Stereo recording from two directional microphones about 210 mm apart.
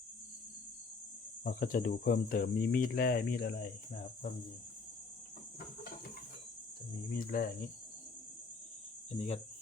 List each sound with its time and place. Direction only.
1.5 s speech: 40° left (ahead or behind)
7.1 s speech: 40° left (ahead or behind)
9.1 s speech: 30° left (ahead or behind)